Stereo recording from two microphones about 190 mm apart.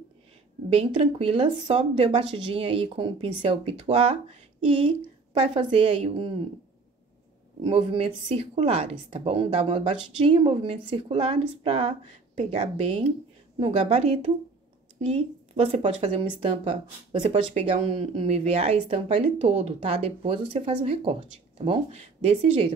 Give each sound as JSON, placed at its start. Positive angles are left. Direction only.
{"t": 0.7, "sound": "speech", "side_deg": -30}
{"t": 5.5, "sound": "speech", "side_deg": -25}
{"t": 7.6, "sound": "speech", "side_deg": -30}